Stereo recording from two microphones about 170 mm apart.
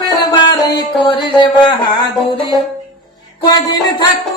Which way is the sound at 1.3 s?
25° left (ahead or behind).